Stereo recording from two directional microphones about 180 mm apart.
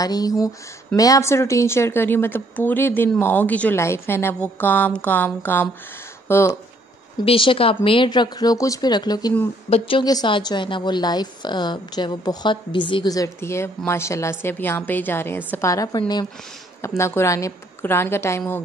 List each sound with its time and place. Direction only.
0.0 s speech: 20° left (ahead or behind)
7.2 s speech: 30° left (ahead or behind); by 18.4 s 15° left (ahead or behind)